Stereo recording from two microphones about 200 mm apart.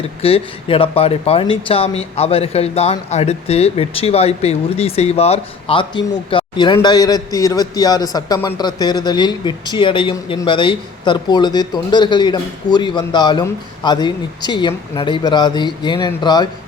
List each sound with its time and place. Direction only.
0.2 s a man's voice: 30° left (ahead or behind)